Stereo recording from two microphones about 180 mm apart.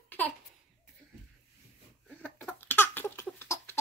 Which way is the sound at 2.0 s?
5° left (ahead or behind).